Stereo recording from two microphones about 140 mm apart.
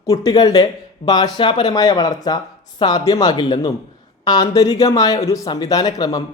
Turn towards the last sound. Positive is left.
turn(degrees=25)  # may be behind; listen again after turning